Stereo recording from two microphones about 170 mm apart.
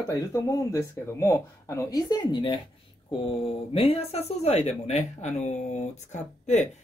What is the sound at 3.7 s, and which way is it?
Speech, 35° left (ahead or behind).